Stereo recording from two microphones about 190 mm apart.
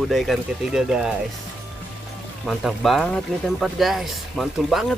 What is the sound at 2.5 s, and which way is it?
Speech, centre (ahead or behind).